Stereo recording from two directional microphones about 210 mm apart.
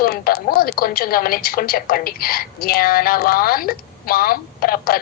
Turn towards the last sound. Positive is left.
turn(degrees=45)  # may be behind; listen again after turning